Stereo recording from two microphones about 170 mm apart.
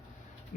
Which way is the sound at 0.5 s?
50° left (ahead or behind).